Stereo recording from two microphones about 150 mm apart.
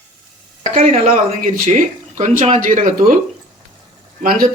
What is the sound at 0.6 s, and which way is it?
Speech, 55° right (ahead or behind).